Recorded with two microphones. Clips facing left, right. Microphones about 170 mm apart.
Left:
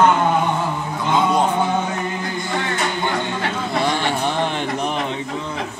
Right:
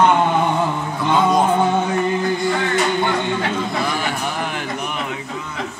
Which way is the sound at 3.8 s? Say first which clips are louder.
Left 3 dB; 30° left (ahead or behind).